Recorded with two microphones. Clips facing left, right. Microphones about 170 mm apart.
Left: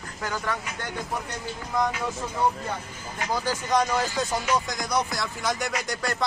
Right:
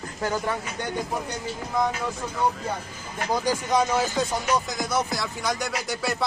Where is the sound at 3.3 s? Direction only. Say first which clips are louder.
Right 2 dB; 15° right (ahead or behind).